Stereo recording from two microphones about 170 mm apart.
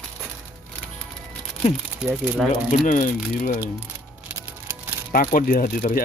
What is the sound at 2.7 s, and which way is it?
Speech, 50° left (ahead or behind).